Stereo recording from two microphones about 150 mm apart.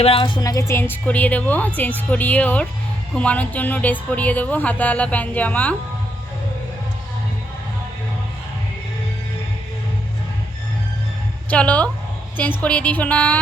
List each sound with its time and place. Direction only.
0.0 s a woman's voice: 35° left (ahead or behind); by 5.7 s 10° left (ahead or behind)
11.5 s a woman's voice: 10° left (ahead or behind)